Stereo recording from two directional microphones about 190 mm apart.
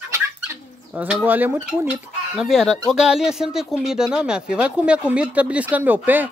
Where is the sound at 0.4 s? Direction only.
10° right (ahead or behind).